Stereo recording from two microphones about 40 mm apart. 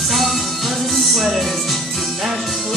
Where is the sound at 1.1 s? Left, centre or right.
Centre.